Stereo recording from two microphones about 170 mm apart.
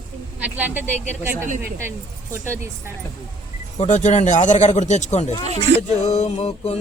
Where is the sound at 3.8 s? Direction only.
45° left (ahead or behind).